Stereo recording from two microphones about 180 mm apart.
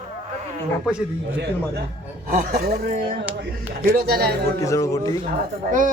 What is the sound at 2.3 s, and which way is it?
Speech, 50° right (ahead or behind).